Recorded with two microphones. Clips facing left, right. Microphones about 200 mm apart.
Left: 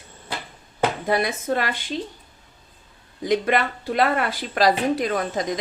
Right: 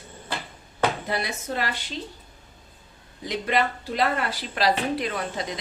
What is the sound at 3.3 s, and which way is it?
Speech, 55° left (ahead or behind).